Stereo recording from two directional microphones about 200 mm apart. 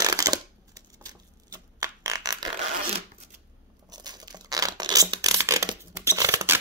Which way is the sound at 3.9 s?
20° right (ahead or behind).